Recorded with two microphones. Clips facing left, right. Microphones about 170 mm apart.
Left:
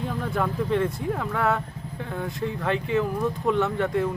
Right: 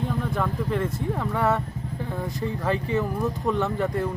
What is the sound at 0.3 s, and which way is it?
Speech, centre (ahead or behind).